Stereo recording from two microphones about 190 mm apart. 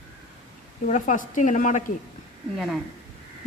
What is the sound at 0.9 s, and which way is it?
Speech, 40° left (ahead or behind).